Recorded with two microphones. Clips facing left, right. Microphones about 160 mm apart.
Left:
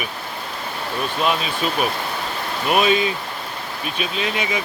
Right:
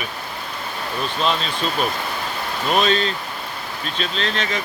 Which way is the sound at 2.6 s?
10° left (ahead or behind).